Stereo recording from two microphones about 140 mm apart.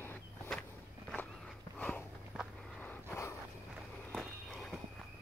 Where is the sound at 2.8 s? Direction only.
15° left (ahead or behind).